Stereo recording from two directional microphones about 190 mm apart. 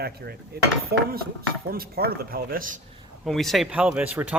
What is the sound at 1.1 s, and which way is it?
Speech, 50° right (ahead or behind).